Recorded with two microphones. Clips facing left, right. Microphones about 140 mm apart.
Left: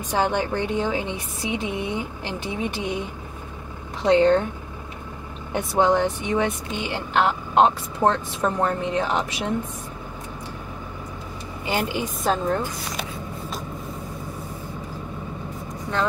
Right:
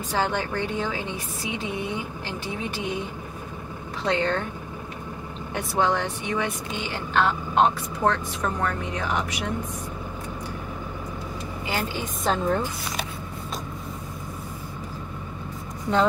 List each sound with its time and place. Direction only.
0.1 s speech: 15° left (ahead or behind)
4.0 s speech: 20° left (ahead or behind)
5.5 s speech: 20° left (ahead or behind)
11.7 s speech: 15° left (ahead or behind)
12.2 s a woman's voice: centre (ahead or behind)